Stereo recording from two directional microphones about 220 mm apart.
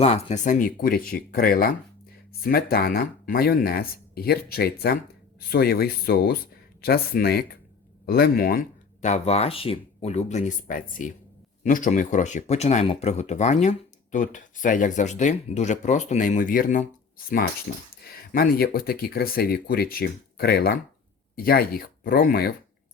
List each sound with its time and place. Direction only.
0.0 s speech: 30° left (ahead or behind)
17.9 s speech: 40° left (ahead or behind)